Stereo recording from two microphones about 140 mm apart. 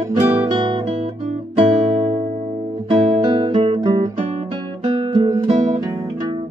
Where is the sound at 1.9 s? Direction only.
35° right (ahead or behind).